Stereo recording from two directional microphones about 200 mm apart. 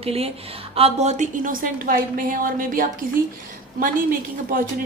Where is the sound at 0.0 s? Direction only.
30° right (ahead or behind); by 2.9 s 45° right (ahead or behind).